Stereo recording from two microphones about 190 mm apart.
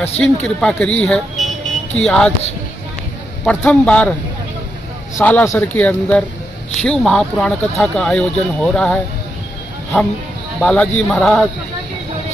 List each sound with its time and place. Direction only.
0.2 s speech: 5° left (ahead or behind)
3.4 s a man's voice: 5° left (ahead or behind)
5.1 s a man's voice: 10° left (ahead or behind)
10.6 s speech: 5° left (ahead or behind)